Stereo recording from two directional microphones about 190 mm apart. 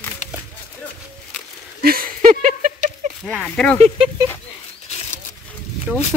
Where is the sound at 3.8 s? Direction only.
30° right (ahead or behind).